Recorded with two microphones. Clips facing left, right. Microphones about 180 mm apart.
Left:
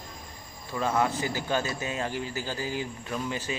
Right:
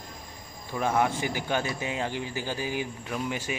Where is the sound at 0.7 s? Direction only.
15° right (ahead or behind).